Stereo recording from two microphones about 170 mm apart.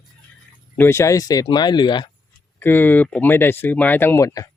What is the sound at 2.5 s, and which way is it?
Speech, 10° left (ahead or behind).